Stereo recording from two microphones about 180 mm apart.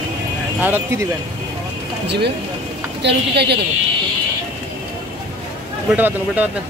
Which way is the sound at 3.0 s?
65° right (ahead or behind).